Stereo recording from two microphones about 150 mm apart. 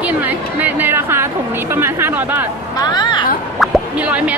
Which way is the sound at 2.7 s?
25° left (ahead or behind).